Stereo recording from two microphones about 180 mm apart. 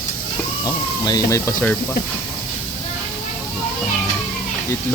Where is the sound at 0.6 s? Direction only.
20° left (ahead or behind).